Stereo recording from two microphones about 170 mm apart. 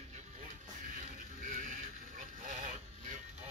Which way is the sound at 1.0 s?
50° right (ahead or behind).